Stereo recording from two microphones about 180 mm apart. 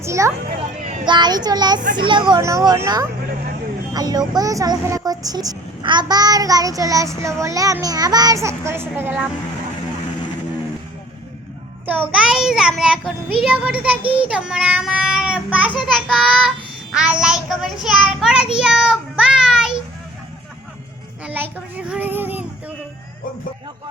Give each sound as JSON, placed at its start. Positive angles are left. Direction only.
{"t": 0.0, "sound": "speech", "side_deg": -15}
{"t": 0.8, "sound": "a sound", "side_deg": -45}
{"t": 1.0, "sound": "speech", "side_deg": -25}
{"t": 11.9, "sound": "a child's voice", "side_deg": -5}
{"t": 21.2, "sound": "a child's voice", "side_deg": -10}